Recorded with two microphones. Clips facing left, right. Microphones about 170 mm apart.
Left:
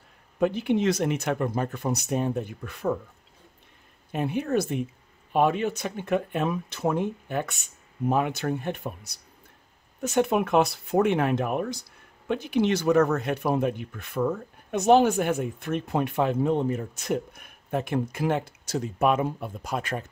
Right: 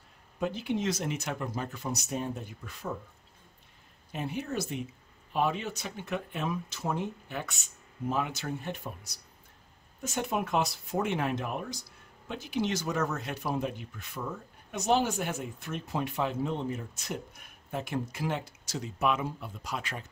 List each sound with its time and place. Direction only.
0.4 s speech: 60° left (ahead or behind)
4.1 s speech: 60° left (ahead or behind)